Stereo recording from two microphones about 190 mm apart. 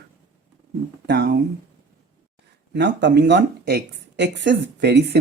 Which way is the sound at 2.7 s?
65° right (ahead or behind).